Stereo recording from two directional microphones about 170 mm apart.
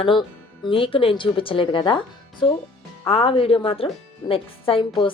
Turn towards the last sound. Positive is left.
turn(degrees=30)  # may be behind; listen again after turning